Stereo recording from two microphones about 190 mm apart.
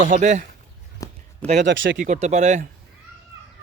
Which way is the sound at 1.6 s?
75° right (ahead or behind).